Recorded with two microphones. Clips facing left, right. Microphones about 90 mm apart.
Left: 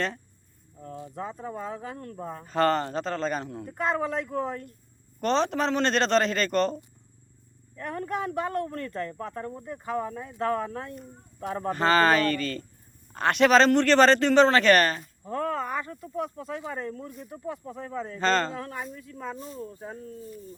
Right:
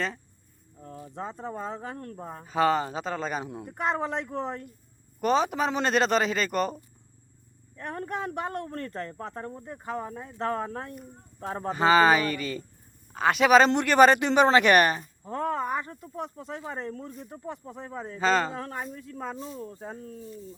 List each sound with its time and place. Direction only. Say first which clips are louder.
1.1 s speech: right 1 dB; 30° right (ahead or behind)
2.4 s speech: even; 5° right (ahead or behind)
3.5 s a man's voice: left 1 dB; 20° right (ahead or behind)
5.2 s speech: even; 10° right (ahead or behind)
7.9 s speech: left 3 dB; 35° right (ahead or behind)
11.7 s a man's voice: right 1 dB; 10° right (ahead or behind); by 17.5 s 35° right (ahead or behind)
17.7 s a man's voice: left 3 dB; 25° right (ahead or behind)
18.2 s speech: right 1 dB; 10° right (ahead or behind)
18.5 s speech: even; 40° right (ahead or behind)